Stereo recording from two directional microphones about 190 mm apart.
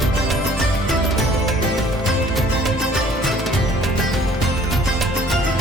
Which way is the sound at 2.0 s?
Centre (ahead or behind).